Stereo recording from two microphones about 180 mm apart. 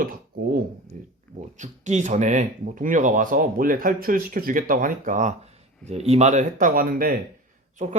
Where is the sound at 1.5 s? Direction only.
40° right (ahead or behind).